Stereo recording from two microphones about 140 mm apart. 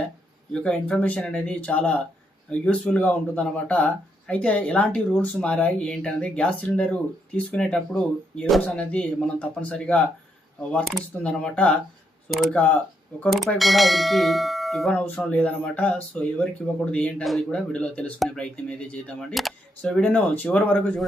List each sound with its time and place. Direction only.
0.5 s speech: 10° left (ahead or behind)
8.4 s bell: centre (ahead or behind)
8.6 s speech: 10° left (ahead or behind)
10.7 s bell: 5° left (ahead or behind)
11.2 s speech: 5° left (ahead or behind)
12.3 s bell: centre (ahead or behind)
13.1 s speech: 10° left (ahead or behind)
13.6 s bell: centre (ahead or behind)
15.0 s speech: 10° left (ahead or behind)